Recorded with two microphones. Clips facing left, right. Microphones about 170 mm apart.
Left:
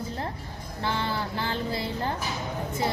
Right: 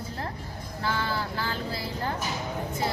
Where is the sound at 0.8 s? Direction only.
25° left (ahead or behind).